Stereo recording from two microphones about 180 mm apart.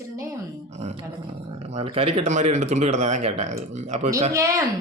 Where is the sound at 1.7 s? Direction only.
30° right (ahead or behind).